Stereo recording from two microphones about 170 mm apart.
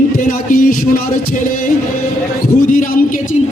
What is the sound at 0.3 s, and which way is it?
Music, 50° left (ahead or behind).